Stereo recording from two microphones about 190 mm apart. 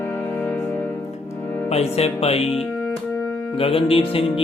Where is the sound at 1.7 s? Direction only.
35° left (ahead or behind).